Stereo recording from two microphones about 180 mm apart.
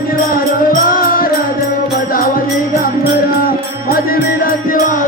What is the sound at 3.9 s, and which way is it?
Music, 55° left (ahead or behind).